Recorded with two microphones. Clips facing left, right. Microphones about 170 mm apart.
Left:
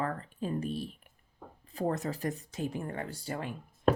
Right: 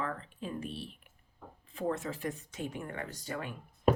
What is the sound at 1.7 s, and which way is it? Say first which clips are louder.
Speech: left 2 dB; 40° left (ahead or behind).